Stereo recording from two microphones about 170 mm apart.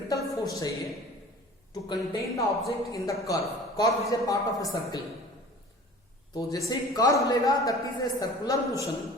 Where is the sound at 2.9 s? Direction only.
20° left (ahead or behind).